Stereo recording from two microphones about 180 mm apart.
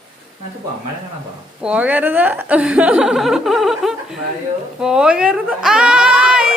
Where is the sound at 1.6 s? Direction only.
5° right (ahead or behind).